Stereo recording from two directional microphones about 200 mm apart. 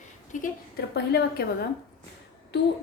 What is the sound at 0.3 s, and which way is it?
Speech, 40° left (ahead or behind).